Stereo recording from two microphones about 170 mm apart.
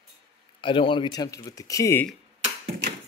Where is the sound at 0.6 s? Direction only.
30° left (ahead or behind).